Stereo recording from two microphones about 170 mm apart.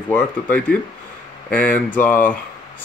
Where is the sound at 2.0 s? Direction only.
10° left (ahead or behind).